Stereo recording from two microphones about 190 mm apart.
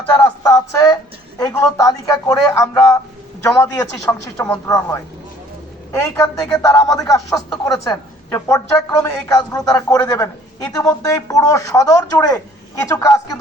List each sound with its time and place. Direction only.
0.1 s speech: 15° left (ahead or behind)